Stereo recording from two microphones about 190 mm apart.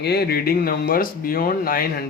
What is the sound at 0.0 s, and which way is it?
Speech, 55° left (ahead or behind).